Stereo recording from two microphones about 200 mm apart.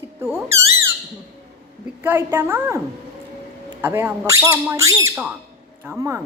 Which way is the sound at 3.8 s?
10° right (ahead or behind).